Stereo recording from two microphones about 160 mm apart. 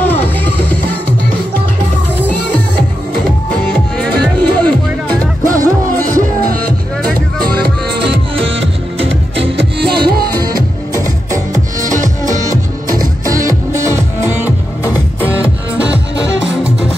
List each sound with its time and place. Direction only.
4.0 s music: 5° left (ahead or behind)
5.4 s music: 55° right (ahead or behind)
7.4 s music: 80° right
8.0 s music: 35° right (ahead or behind)
9.6 s music: 85° right
12.3 s music: 20° right (ahead or behind)